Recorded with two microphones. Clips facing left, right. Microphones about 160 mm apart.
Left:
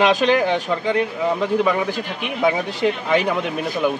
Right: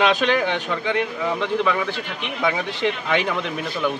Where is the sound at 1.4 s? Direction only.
10° left (ahead or behind).